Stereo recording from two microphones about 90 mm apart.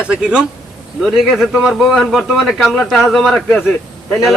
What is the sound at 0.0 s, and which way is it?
A man's voice, 10° right (ahead or behind).